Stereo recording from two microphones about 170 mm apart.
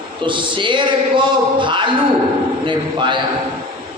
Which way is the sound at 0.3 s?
30° right (ahead or behind).